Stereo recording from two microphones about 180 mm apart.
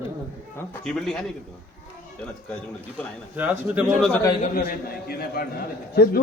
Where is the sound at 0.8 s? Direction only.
Centre (ahead or behind).